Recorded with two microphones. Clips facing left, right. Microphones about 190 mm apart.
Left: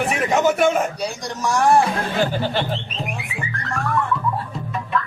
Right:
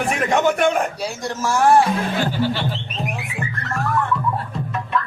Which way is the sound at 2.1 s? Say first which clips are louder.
Even; 50° left (ahead or behind).